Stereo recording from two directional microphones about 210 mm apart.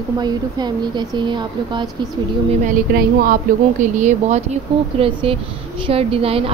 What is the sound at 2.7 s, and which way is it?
A woman's voice, 45° right (ahead or behind).